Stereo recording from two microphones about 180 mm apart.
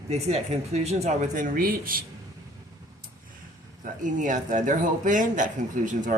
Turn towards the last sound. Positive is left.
turn(degrees=-45)  # may be behind; listen again after turning